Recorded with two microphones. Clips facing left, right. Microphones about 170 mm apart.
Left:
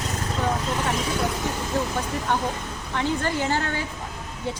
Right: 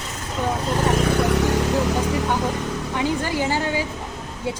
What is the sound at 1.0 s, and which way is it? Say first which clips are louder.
Speech: right 6 dB; 65° right (ahead or behind).